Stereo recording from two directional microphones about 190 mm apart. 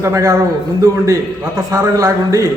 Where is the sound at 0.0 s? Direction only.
15° right (ahead or behind).